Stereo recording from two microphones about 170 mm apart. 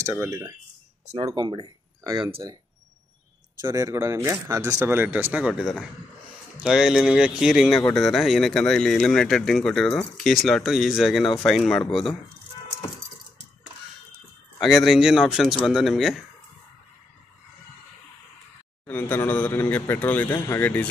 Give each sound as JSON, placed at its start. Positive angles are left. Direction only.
{"t": 0.0, "sound": "speech", "side_deg": -15}
{"t": 3.6, "sound": "speech", "side_deg": -20}
{"t": 14.6, "sound": "speech", "side_deg": 0}
{"t": 18.9, "sound": "speech", "side_deg": 10}